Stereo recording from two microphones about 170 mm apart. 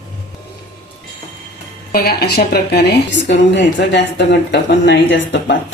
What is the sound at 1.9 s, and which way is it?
A woman's voice, 65° left (ahead or behind).